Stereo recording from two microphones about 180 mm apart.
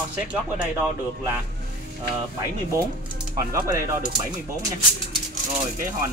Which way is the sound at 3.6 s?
20° right (ahead or behind).